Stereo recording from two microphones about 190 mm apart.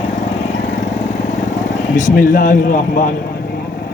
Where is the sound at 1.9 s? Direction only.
45° left (ahead or behind).